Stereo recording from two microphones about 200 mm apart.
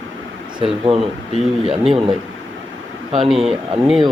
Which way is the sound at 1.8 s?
Centre (ahead or behind).